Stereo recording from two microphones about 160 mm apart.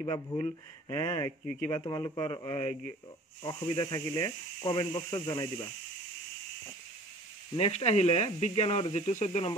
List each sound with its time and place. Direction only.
0.0 s speech: 30° left (ahead or behind)
7.5 s speech: 40° left (ahead or behind)